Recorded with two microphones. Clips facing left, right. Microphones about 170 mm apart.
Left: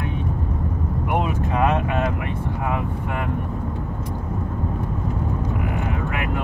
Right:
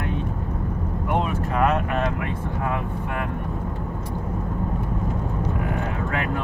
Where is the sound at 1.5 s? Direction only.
20° left (ahead or behind).